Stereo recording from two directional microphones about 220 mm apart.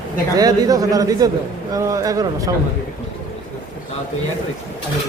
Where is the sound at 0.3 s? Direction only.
15° right (ahead or behind).